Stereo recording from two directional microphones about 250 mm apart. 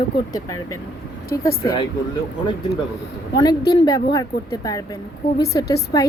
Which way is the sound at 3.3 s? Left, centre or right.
Centre.